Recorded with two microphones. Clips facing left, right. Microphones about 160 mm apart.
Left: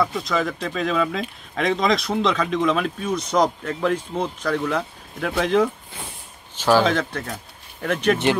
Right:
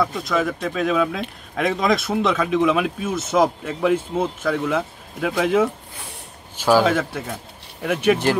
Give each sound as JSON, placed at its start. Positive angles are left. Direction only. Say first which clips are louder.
{"t": 0.0, "sound": "speech", "louder": "right 1 dB", "side_deg": 0}